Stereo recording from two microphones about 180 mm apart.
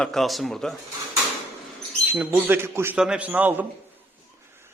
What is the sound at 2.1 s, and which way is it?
A man's voice, 10° right (ahead or behind).